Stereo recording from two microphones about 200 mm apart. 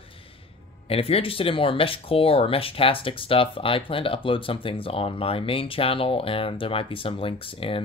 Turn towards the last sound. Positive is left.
turn(degrees=25)  # may be behind; listen again after turning